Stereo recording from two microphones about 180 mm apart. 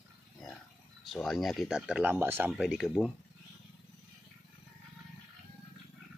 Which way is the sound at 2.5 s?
Centre (ahead or behind).